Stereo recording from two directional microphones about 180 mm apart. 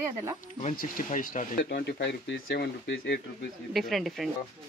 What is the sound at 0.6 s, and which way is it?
Speech, 45° left (ahead or behind).